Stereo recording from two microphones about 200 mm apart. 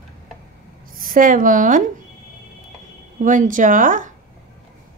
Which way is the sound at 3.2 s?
40° right (ahead or behind).